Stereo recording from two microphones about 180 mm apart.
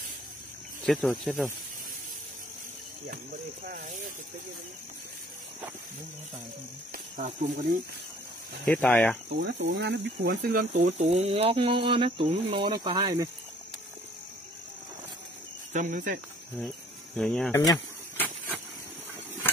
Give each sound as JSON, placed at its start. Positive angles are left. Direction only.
{"t": 0.8, "sound": "speech", "side_deg": 0}
{"t": 3.6, "sound": "speech", "side_deg": -50}
{"t": 7.2, "sound": "speech", "side_deg": -50}
{"t": 8.6, "sound": "speech", "side_deg": 5}
{"t": 9.4, "sound": "speech", "side_deg": -70}
{"t": 10.8, "sound": "speech", "side_deg": -35}
{"t": 15.7, "sound": "speech", "side_deg": -45}
{"t": 16.5, "sound": "speech", "side_deg": 5}
{"t": 17.5, "sound": "a sound", "side_deg": 15}
{"t": 19.4, "sound": "engine", "side_deg": 10}